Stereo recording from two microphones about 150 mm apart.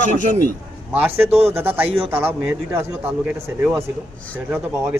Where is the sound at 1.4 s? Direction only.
15° right (ahead or behind).